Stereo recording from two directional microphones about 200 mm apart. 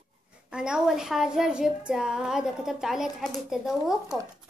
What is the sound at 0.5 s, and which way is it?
A woman's voice, 5° right (ahead or behind).